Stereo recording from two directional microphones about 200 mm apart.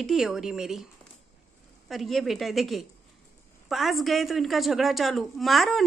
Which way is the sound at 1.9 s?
Centre (ahead or behind).